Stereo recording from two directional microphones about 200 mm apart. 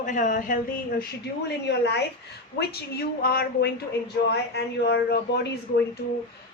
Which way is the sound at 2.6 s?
50° left (ahead or behind).